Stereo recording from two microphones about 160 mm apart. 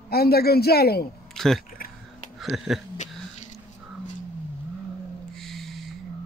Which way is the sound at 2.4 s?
Centre (ahead or behind).